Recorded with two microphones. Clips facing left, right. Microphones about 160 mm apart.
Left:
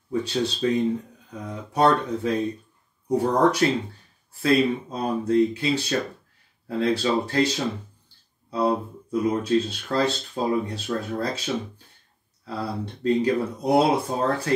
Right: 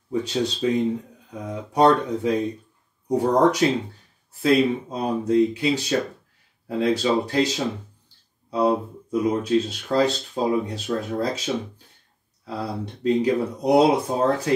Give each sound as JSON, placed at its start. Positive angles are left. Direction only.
{"t": 0.1, "sound": "speech", "side_deg": -15}